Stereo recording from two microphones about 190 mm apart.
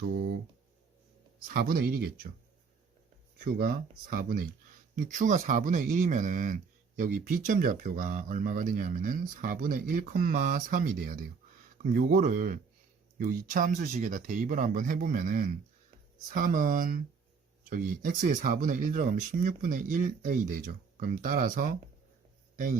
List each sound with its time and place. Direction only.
1.5 s speech: 50° right (ahead or behind)
3.3 s a man's voice: 45° right (ahead or behind)